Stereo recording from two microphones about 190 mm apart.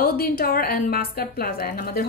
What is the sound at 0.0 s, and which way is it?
A woman's voice, 50° left (ahead or behind).